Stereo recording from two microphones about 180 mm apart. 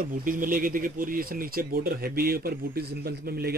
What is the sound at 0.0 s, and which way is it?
Speech, 50° right (ahead or behind).